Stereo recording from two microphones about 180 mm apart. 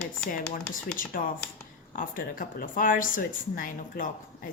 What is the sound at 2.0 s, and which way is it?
A woman's voice, 50° left (ahead or behind).